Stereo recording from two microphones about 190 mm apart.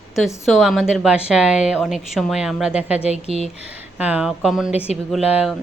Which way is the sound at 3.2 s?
30° right (ahead or behind).